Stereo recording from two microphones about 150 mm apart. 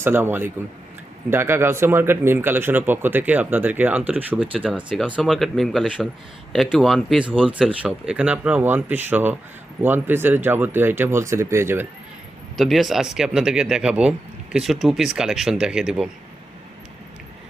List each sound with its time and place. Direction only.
0.0 s speech: 15° right (ahead or behind)
12.5 s speech: centre (ahead or behind)